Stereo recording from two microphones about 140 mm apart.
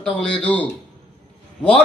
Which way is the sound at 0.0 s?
5° left (ahead or behind).